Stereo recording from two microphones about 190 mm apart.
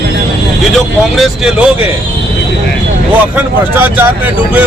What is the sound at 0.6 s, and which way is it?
Speech, centre (ahead or behind).